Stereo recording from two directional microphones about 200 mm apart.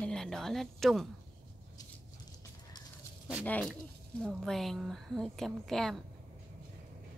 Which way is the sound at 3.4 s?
5° left (ahead or behind).